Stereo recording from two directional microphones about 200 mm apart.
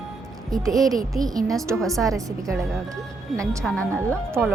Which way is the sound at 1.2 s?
20° right (ahead or behind).